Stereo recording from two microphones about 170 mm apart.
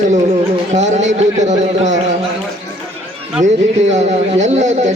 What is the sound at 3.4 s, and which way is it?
A man's voice, 45° right (ahead or behind).